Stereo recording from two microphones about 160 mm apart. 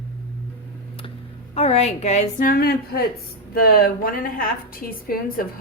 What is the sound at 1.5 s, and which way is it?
A woman's voice, 40° left (ahead or behind).